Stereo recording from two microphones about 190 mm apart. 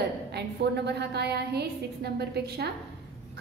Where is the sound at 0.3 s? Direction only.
60° right (ahead or behind).